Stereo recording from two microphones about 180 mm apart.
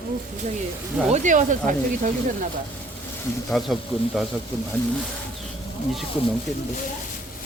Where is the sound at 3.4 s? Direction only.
Centre (ahead or behind).